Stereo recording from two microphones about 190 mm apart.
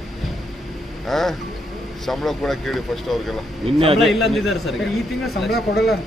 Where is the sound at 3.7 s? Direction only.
30° right (ahead or behind).